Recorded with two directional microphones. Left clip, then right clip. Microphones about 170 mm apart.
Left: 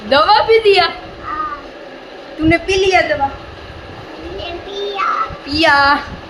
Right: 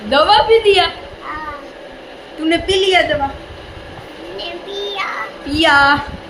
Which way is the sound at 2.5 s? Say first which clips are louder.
Left 1 dB; 20° left (ahead or behind).